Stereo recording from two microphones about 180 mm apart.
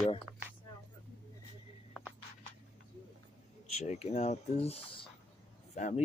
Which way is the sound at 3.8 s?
40° left (ahead or behind).